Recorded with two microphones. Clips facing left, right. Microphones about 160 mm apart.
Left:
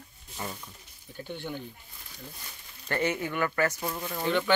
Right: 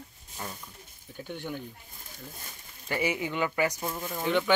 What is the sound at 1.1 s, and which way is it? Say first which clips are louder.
Speech: even; 5° right (ahead or behind).